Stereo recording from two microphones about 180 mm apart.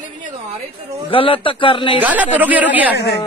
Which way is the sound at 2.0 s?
10° right (ahead or behind).